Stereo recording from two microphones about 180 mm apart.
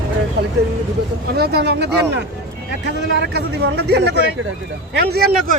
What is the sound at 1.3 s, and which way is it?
A man's voice, 60° right (ahead or behind).